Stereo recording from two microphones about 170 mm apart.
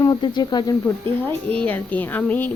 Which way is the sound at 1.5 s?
10° left (ahead or behind).